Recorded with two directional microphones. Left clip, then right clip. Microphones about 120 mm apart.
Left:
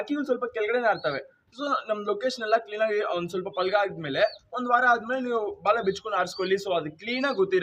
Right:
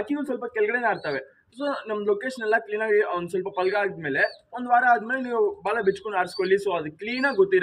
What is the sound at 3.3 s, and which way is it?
A man's voice, 35° left (ahead or behind).